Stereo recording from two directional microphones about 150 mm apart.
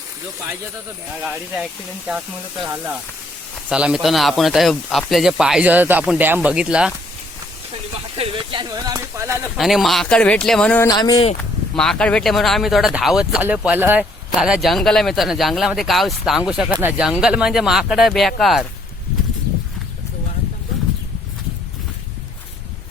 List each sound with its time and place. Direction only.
1.2 s speech: 5° right (ahead or behind)
3.7 s speech: 5° right (ahead or behind)
8.1 s speech: 35° right (ahead or behind); by 9.5 s 20° right (ahead or behind)
9.6 s speech: centre (ahead or behind)
10.8 s speech: 25° left (ahead or behind)
11.8 s speech: 5° left (ahead or behind)